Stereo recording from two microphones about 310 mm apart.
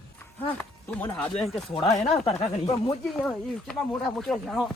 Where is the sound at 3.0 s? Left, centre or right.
Centre.